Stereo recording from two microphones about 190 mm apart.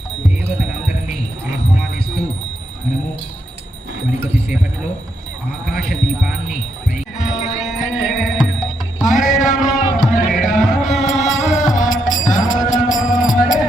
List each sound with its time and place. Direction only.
0.6 s music: 5° right (ahead or behind)
5.7 s a sound: centre (ahead or behind)
7.2 s music: 40° left (ahead or behind)
7.9 s music: centre (ahead or behind)
9.0 s music: 40° left (ahead or behind)